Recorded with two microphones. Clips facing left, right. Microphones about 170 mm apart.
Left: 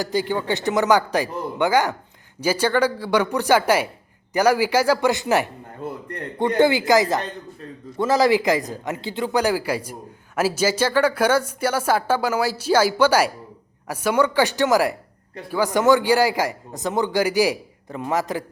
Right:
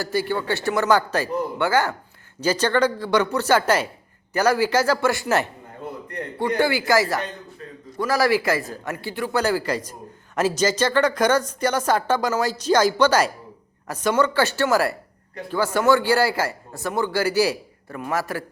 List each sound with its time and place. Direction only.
0.0 s a woman's voice: 15° left (ahead or behind)